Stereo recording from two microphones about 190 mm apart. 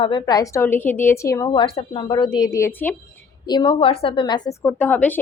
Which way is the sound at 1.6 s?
30° left (ahead or behind).